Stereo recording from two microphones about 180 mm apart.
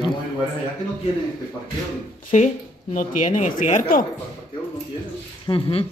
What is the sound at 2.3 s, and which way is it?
Speech, 45° left (ahead or behind).